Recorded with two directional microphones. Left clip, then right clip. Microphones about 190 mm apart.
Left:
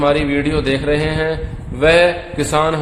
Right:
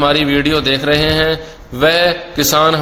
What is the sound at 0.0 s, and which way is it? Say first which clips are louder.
A man's voice: right 3 dB; 20° right (ahead or behind).